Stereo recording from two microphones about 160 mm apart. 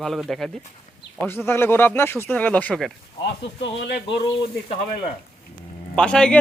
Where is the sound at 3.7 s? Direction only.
90° left.